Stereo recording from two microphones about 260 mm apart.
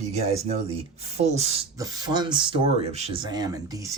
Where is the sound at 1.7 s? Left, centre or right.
Centre.